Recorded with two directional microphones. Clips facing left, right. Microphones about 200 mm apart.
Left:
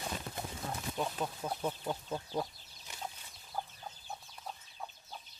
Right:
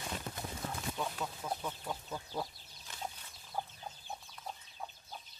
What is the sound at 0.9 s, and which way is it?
Speech, 30° left (ahead or behind).